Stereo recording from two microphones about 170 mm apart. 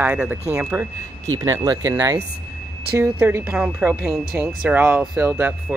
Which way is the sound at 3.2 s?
10° right (ahead or behind).